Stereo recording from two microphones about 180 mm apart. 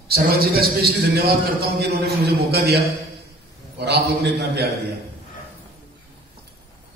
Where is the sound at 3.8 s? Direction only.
65° right (ahead or behind).